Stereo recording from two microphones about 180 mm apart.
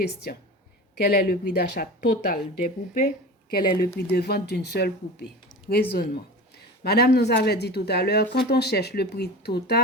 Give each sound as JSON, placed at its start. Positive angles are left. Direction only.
{"t": 0.9, "sound": "speech", "side_deg": 60}